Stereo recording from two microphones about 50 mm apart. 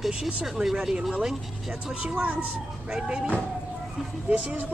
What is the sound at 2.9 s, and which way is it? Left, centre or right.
Speech, centre.